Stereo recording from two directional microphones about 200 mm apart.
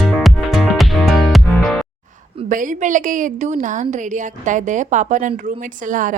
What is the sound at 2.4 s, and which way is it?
A woman's voice, 40° right (ahead or behind).